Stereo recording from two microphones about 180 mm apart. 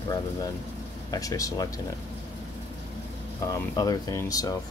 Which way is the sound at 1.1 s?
20° left (ahead or behind).